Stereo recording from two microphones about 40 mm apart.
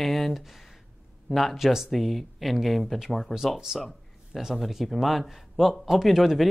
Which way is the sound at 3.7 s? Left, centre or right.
Centre.